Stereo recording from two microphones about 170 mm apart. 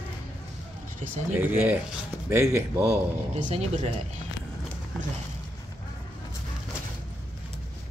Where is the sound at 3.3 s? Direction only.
40° right (ahead or behind).